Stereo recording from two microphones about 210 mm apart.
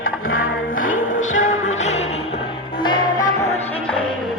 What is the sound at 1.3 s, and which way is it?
Music, 35° left (ahead or behind).